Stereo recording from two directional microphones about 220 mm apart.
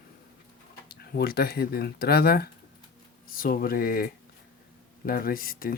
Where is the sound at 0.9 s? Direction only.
45° left (ahead or behind).